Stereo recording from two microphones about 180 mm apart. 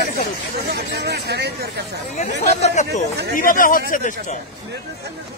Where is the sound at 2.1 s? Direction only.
40° left (ahead or behind).